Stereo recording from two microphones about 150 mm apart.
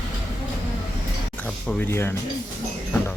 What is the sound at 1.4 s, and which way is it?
Speech, 10° left (ahead or behind).